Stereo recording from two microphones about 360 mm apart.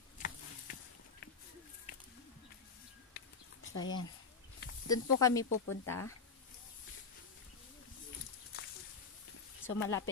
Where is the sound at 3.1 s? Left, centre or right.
Left.